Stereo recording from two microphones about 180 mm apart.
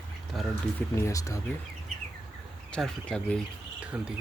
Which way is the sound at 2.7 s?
5° left (ahead or behind).